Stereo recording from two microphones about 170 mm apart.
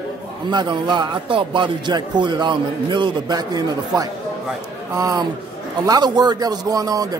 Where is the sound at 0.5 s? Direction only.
25° right (ahead or behind).